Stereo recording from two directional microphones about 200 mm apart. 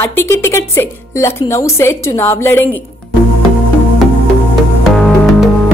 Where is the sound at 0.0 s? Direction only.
15° left (ahead or behind).